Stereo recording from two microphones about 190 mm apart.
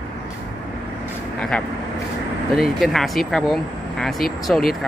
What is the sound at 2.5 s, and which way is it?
Speech, centre (ahead or behind).